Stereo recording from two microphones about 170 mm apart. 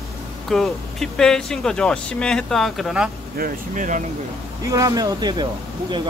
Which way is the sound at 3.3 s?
55° right (ahead or behind).